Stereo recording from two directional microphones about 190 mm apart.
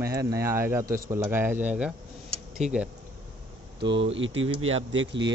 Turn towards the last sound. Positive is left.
turn(degrees=-75)  # may be behind; listen again after turning